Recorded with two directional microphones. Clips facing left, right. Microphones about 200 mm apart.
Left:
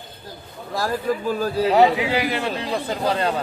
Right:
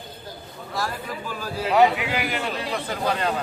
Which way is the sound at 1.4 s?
35° left (ahead or behind).